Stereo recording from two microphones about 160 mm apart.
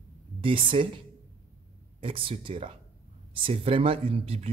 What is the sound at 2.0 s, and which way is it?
Speech, 35° right (ahead or behind).